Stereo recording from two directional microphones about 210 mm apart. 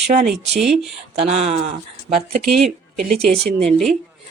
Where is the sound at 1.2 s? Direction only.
30° right (ahead or behind).